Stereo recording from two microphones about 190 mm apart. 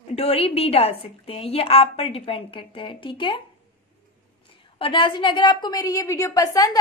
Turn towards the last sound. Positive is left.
turn(degrees=20)  # may be behind; listen again after turning